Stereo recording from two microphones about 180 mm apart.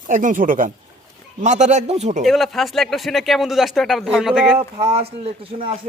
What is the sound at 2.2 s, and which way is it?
A man's voice, centre (ahead or behind).